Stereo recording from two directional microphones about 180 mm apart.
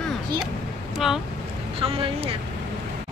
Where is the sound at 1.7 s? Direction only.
30° right (ahead or behind).